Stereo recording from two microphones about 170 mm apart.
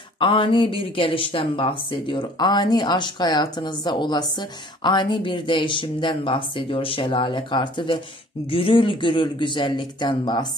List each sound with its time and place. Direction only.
0.2 s speech: 30° left (ahead or behind)